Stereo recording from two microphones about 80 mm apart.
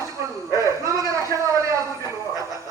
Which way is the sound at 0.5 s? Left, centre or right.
Right.